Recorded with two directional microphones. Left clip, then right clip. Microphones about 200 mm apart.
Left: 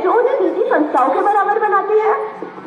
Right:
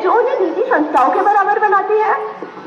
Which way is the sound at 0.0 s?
30° left (ahead or behind).